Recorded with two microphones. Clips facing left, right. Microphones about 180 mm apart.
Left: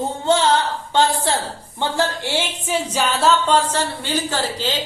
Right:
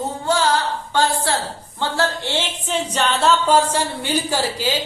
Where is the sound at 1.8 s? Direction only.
15° left (ahead or behind).